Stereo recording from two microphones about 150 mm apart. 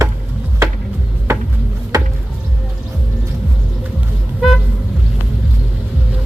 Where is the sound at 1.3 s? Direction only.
20° right (ahead or behind).